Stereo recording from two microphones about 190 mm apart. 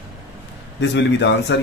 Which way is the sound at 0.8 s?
70° left (ahead or behind).